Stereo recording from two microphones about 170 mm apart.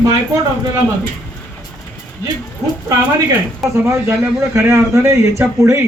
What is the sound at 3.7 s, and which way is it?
A man's voice, 15° right (ahead or behind).